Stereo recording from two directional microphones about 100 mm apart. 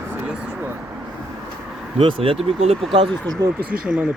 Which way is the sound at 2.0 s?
65° right (ahead or behind).